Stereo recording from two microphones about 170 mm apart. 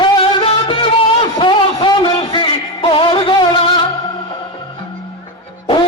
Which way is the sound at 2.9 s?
30° left (ahead or behind).